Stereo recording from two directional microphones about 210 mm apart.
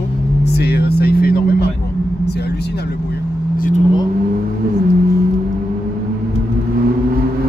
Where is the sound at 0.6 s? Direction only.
50° left (ahead or behind).